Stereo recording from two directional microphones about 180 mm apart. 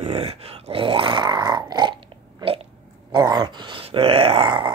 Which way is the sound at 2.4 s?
30° right (ahead or behind).